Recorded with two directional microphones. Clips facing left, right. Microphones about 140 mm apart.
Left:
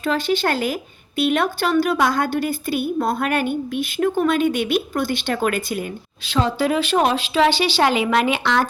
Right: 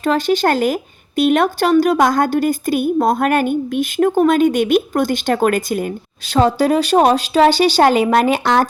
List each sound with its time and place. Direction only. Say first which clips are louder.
0.0 s a woman's voice: right 5 dB; 45° right (ahead or behind)